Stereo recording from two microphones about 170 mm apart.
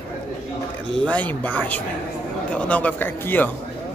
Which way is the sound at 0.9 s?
5° left (ahead or behind).